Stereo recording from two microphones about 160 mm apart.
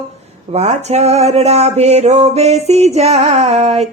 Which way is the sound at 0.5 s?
45° right (ahead or behind).